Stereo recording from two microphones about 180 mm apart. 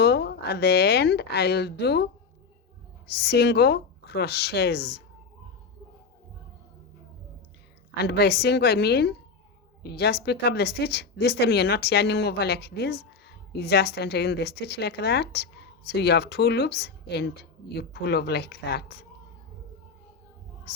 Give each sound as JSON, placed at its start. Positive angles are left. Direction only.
{"t": 0.0, "sound": "speech", "side_deg": 65}
{"t": 3.1, "sound": "speech", "side_deg": 65}
{"t": 8.0, "sound": "speech", "side_deg": 65}